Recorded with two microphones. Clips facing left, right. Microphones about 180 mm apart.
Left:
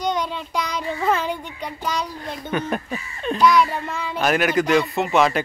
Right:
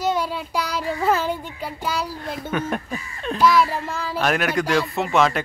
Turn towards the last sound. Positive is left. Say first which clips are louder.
# left 1 dB
turn(degrees=0)  # may be behind; listen again after turning